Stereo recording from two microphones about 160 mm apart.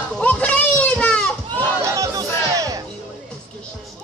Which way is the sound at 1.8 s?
20° right (ahead or behind).